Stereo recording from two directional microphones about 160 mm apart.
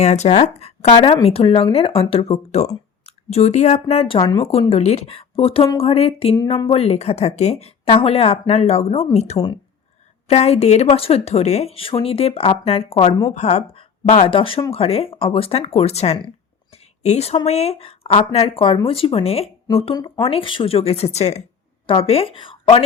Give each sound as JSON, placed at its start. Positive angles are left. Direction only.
{"t": 0.0, "sound": "speech", "side_deg": 45}
{"t": 14.3, "sound": "speech", "side_deg": 35}